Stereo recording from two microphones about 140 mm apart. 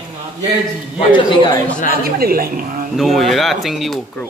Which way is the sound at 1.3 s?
35° left (ahead or behind).